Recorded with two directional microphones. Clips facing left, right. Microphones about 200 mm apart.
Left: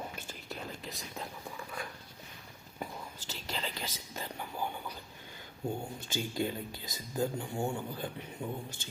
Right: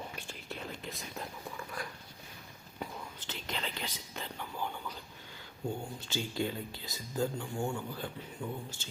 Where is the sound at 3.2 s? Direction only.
40° left (ahead or behind).